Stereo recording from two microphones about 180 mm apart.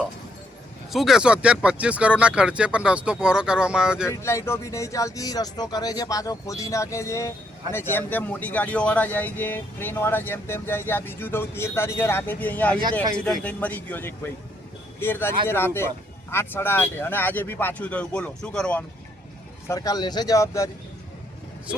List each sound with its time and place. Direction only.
0.9 s speech: centre (ahead or behind)
4.1 s speech: 15° left (ahead or behind)
12.8 s speech: 20° right (ahead or behind)
13.1 s speech: 5° left (ahead or behind)
19.6 s speech: 20° left (ahead or behind)